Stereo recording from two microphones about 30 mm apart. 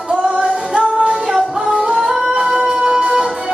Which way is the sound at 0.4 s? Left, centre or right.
Right.